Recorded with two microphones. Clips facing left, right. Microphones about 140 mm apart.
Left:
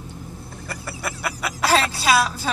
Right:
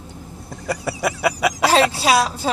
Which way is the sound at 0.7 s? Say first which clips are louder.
Right 9 dB; 80° right.